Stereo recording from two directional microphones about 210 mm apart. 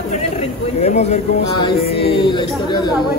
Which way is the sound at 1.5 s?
25° left (ahead or behind).